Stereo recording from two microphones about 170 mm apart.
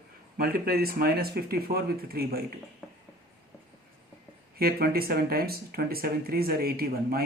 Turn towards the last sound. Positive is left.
turn(degrees=-60)  # may be behind; listen again after turning